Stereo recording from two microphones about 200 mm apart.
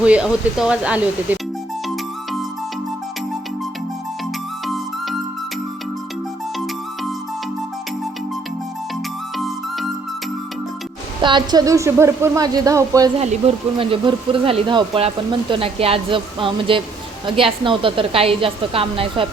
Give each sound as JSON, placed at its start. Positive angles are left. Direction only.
{"t": 0.0, "sound": "speech", "side_deg": -5}
{"t": 4.6, "sound": "music", "side_deg": 0}
{"t": 9.4, "sound": "music", "side_deg": 0}
{"t": 11.2, "sound": "a woman's voice", "side_deg": -25}
{"t": 13.1, "sound": "speech", "side_deg": -30}